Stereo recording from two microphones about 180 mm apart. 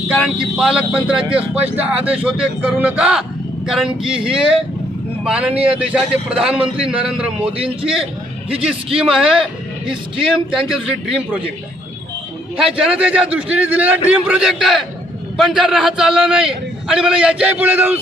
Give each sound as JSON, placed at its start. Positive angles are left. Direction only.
{"t": 0.5, "sound": "a man's voice", "side_deg": 0}
{"t": 7.5, "sound": "a man's voice", "side_deg": -30}
{"t": 9.0, "sound": "a man's voice", "side_deg": -5}
{"t": 12.6, "sound": "a man's voice", "side_deg": -5}